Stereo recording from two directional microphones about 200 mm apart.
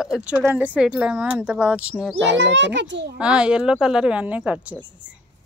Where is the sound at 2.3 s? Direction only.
60° right (ahead or behind).